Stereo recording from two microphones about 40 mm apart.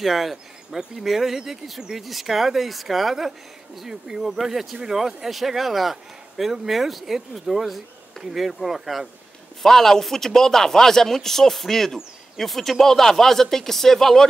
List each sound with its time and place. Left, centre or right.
0.0 s speech: centre
9.6 s speech: centre